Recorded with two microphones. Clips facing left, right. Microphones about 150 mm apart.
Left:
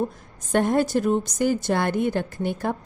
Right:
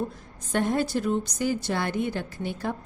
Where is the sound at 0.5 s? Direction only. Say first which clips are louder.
Left 5 dB; 50° left (ahead or behind).